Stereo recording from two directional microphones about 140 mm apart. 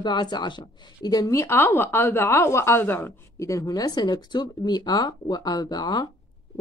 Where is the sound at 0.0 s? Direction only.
30° left (ahead or behind).